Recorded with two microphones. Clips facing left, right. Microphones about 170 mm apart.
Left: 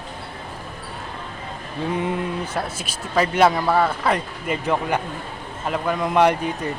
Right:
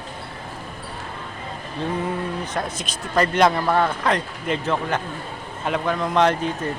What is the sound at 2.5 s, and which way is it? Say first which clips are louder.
Speech: even; 5° left (ahead or behind).